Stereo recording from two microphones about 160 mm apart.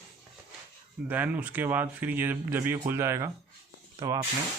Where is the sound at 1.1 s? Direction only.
10° right (ahead or behind).